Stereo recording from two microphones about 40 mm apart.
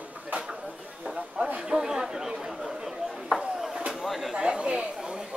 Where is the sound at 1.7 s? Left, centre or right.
Centre.